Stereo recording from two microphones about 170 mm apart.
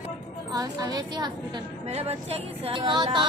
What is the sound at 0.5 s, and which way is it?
Speech, 20° right (ahead or behind).